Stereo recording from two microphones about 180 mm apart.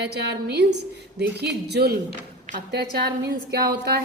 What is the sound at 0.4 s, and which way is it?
A woman's voice, 65° right (ahead or behind).